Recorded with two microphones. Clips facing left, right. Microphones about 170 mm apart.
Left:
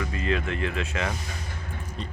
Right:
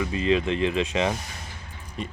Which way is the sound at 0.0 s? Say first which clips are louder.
Right 5 dB; 20° right (ahead or behind).